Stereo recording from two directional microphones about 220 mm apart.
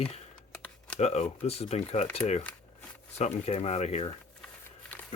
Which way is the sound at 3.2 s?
30° left (ahead or behind).